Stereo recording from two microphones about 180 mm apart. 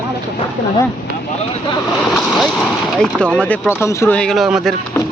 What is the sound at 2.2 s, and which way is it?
A man's voice, centre (ahead or behind).